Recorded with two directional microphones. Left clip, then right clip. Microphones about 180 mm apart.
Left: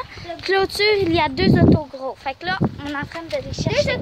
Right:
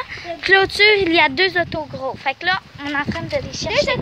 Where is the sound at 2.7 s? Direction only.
15° right (ahead or behind).